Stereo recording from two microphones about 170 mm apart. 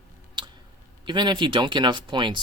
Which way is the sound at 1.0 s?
25° right (ahead or behind).